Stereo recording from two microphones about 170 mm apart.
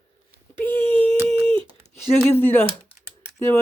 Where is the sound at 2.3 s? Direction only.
10° left (ahead or behind).